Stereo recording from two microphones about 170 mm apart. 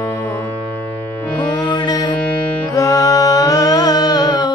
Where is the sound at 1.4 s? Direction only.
25° left (ahead or behind).